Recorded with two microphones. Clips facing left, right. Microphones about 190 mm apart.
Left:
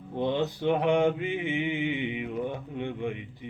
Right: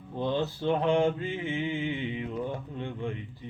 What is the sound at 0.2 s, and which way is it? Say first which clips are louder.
Mantra: left 2 dB; 20° left (ahead or behind).